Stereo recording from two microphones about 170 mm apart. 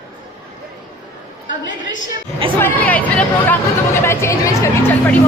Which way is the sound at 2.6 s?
10° left (ahead or behind).